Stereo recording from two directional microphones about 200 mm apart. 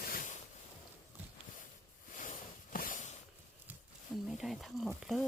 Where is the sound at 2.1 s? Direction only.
40° left (ahead or behind).